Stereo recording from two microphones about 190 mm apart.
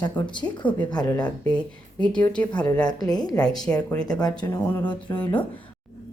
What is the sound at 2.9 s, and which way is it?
Speech, 20° left (ahead or behind).